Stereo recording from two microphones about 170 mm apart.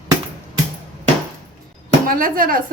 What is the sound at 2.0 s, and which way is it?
Speech, 55° right (ahead or behind).